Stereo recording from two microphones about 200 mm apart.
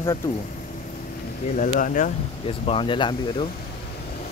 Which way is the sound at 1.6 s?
40° left (ahead or behind).